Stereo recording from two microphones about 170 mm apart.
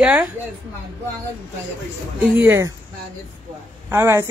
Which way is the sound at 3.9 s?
15° right (ahead or behind).